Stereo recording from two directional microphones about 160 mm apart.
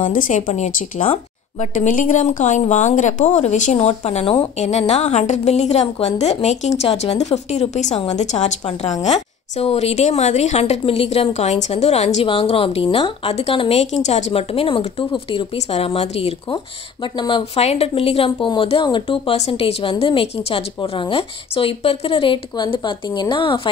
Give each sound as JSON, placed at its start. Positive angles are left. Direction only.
{"t": 0.0, "sound": "a woman's voice", "side_deg": 55}
{"t": 1.0, "sound": "a sound", "side_deg": 35}
{"t": 1.7, "sound": "a woman's voice", "side_deg": 55}
{"t": 17.6, "sound": "a woman's voice", "side_deg": 40}